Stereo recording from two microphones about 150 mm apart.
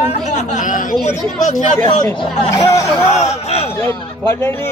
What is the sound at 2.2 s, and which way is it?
Speech, 25° left (ahead or behind).